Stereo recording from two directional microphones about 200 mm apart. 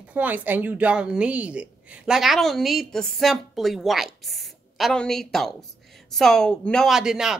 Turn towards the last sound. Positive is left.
turn(degrees=-5)  # may be behind; listen again after turning